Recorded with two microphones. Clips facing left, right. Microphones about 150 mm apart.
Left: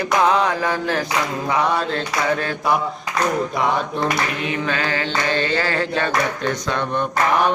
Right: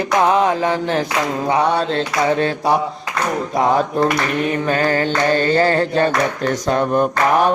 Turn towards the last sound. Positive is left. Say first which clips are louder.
# right 6 dB
turn(degrees=-40)  # may be behind; listen again after turning